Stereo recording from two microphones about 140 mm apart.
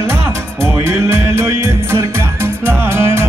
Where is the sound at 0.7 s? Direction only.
20° right (ahead or behind).